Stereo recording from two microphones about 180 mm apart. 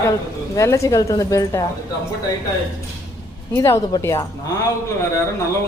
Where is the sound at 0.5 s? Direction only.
15° left (ahead or behind).